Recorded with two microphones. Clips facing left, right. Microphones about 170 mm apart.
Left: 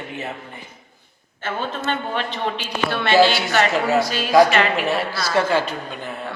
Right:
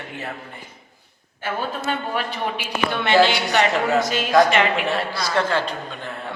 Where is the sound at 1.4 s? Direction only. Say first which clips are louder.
Even; 10° right (ahead or behind).